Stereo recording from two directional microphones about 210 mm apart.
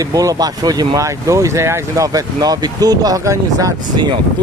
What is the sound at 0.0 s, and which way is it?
Speech, 15° right (ahead or behind).